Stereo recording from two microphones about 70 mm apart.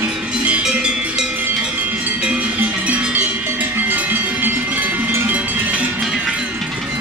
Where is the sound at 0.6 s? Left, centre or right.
Centre.